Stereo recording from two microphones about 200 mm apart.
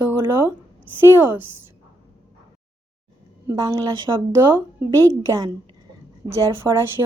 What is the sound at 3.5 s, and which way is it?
Speech, 15° right (ahead or behind).